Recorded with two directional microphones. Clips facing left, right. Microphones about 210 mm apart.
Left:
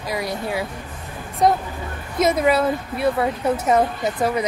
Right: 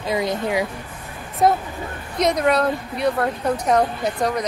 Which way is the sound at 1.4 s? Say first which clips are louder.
Even; 5° right (ahead or behind).